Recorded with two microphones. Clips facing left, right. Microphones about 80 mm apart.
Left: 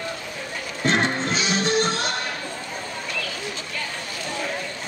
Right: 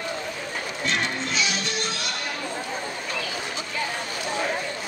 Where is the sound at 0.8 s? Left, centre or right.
Left.